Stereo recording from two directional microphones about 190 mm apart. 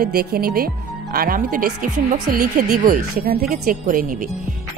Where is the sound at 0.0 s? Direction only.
55° right (ahead or behind).